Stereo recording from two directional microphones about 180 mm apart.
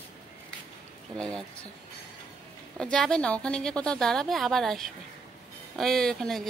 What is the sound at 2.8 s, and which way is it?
A woman's voice, 5° left (ahead or behind).